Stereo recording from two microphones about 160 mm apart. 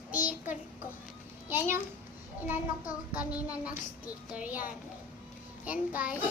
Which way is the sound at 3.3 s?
10° right (ahead or behind).